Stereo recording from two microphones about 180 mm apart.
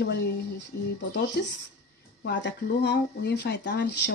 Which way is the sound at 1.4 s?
65° left (ahead or behind).